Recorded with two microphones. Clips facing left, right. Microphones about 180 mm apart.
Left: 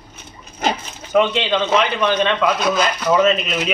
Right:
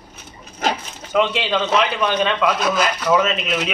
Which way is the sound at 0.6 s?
Centre (ahead or behind).